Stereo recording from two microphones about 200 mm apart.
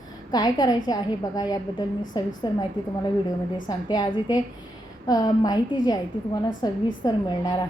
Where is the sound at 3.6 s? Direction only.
20° left (ahead or behind).